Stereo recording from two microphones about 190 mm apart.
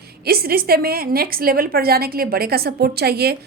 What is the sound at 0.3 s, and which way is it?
A woman's voice, 55° right (ahead or behind).